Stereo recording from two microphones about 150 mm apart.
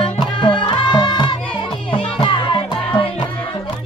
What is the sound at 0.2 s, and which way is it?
Music, 30° left (ahead or behind).